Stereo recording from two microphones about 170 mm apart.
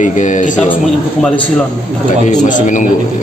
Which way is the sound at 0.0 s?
45° left (ahead or behind).